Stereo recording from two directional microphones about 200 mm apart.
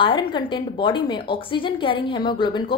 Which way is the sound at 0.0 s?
25° left (ahead or behind).